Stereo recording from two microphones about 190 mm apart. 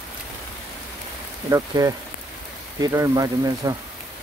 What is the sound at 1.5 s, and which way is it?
Speech, 15° right (ahead or behind).